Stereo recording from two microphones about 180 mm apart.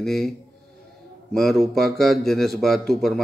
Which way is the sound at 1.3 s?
Centre (ahead or behind).